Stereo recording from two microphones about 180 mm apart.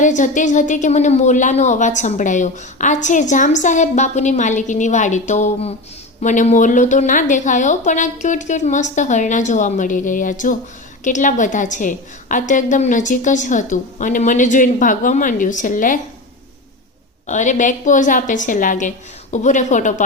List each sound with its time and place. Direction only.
0.0 s a woman's voice: 45° left (ahead or behind)
17.2 s a woman's voice: 45° left (ahead or behind)